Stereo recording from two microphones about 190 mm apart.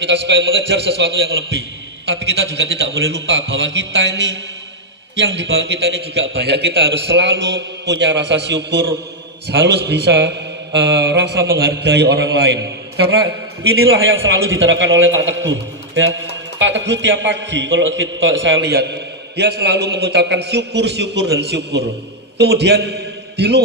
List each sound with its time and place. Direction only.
0.0 s a man's voice: 70° right (ahead or behind)
13.9 s a man's voice: 90° right; by 23.6 s 60° right (ahead or behind)